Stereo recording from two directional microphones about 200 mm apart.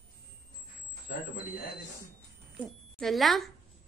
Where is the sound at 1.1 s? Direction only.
55° left (ahead or behind).